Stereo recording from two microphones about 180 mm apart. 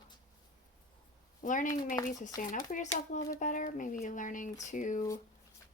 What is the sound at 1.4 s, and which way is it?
Speech, 45° left (ahead or behind).